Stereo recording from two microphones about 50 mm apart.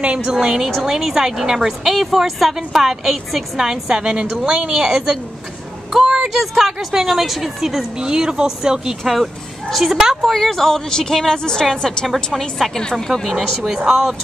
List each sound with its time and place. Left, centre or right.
0.2 s speech: centre
5.9 s a sound: centre
6.2 s speech: centre
8.0 s speech: centre
9.0 s speech: centre
10.3 s a woman's voice: centre
13.7 s speech: centre